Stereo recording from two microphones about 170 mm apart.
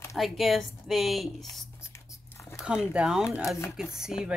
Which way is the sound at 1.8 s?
15° left (ahead or behind).